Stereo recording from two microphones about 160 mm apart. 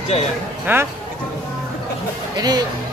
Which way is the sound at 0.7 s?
15° right (ahead or behind).